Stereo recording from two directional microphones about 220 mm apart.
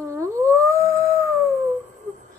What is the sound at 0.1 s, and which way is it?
Howl, 15° right (ahead or behind).